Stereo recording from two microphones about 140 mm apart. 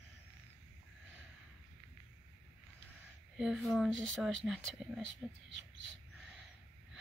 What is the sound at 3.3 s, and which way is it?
Speech, centre (ahead or behind).